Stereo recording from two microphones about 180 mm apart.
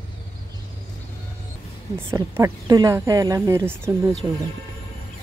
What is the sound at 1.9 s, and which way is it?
Speech, 15° right (ahead or behind).